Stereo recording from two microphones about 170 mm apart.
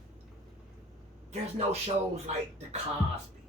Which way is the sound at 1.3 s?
40° right (ahead or behind).